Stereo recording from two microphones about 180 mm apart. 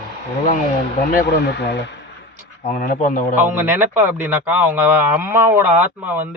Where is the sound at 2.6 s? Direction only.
45° left (ahead or behind).